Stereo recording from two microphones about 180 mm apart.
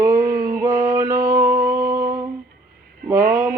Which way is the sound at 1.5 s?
15° right (ahead or behind).